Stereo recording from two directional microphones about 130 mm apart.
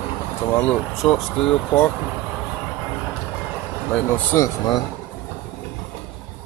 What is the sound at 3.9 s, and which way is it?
Speech, 10° left (ahead or behind).